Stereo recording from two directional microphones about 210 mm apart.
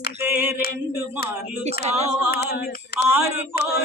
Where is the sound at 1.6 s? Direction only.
30° right (ahead or behind).